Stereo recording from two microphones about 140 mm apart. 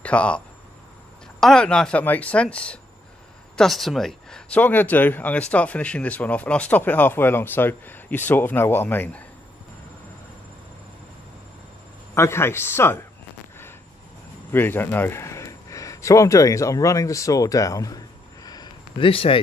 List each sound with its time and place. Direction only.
0.0 s speech: 10° left (ahead or behind)
1.4 s speech: 5° left (ahead or behind)
12.1 s speech: 20° left (ahead or behind)
14.5 s speech: 15° left (ahead or behind); by 19.4 s 40° left (ahead or behind)